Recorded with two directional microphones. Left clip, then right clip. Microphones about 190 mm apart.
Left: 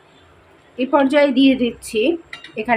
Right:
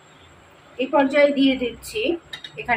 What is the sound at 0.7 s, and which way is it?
Speech, 45° left (ahead or behind).